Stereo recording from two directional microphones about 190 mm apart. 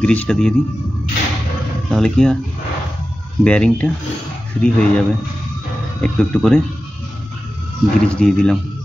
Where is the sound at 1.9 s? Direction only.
Centre (ahead or behind).